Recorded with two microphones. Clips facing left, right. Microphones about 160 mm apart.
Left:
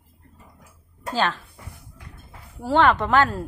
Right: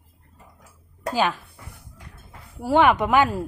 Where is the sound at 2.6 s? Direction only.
10° right (ahead or behind).